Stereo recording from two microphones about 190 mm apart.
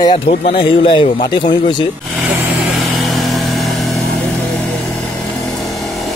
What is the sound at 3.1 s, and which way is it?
Vehicle, centre (ahead or behind).